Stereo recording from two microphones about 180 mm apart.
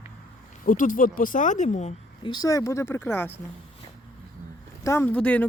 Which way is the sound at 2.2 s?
25° left (ahead or behind).